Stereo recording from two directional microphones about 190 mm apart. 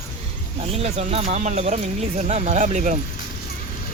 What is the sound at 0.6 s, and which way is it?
Speech, 35° right (ahead or behind).